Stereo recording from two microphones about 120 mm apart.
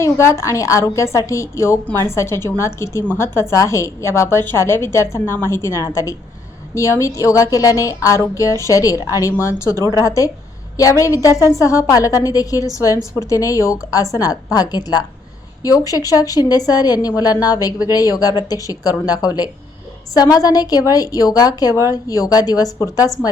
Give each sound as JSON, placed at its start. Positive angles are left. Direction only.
{"t": 0.0, "sound": "a woman's voice", "side_deg": 25}